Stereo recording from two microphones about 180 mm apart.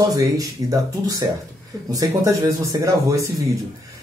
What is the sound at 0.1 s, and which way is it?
Speech, 20° right (ahead or behind).